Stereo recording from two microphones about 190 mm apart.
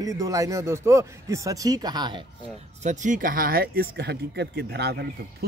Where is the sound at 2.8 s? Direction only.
40° right (ahead or behind).